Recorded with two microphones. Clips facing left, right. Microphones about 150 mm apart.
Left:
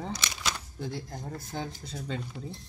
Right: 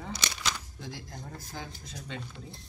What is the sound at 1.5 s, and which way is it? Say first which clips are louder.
Speech: left 7 dB; 35° left (ahead or behind).